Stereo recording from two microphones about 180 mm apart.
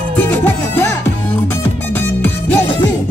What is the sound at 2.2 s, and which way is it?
Music, 10° left (ahead or behind).